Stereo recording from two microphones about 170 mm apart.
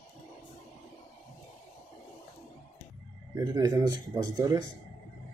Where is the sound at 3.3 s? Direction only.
20° right (ahead or behind).